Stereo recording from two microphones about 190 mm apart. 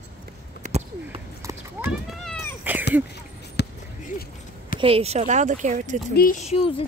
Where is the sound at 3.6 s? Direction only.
60° left (ahead or behind).